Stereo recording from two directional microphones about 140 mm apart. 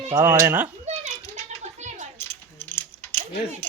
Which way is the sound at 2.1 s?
15° left (ahead or behind).